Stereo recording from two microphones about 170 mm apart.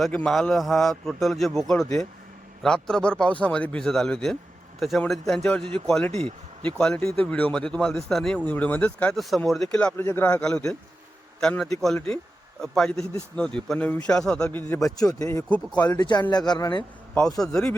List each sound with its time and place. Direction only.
0.0 s a man's voice: 5° left (ahead or behind)
6.1 s speech: 35° right (ahead or behind)
6.7 s a man's voice: 5° left (ahead or behind)
15.4 s speech: 10° left (ahead or behind)
16.0 s speech: 25° left (ahead or behind)
17.4 s a man's voice: 5° left (ahead or behind)